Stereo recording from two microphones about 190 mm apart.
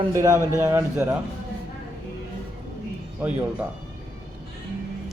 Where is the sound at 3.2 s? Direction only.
5° right (ahead or behind).